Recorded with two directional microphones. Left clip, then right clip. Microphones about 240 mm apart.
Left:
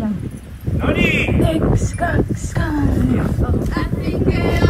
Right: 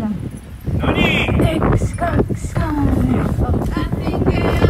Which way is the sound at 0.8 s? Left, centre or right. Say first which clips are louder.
Even; centre.